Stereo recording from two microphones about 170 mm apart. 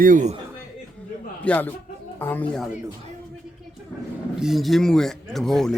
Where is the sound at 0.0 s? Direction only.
50° right (ahead or behind).